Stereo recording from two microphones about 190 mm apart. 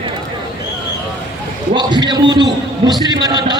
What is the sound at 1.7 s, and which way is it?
Speech, 25° right (ahead or behind).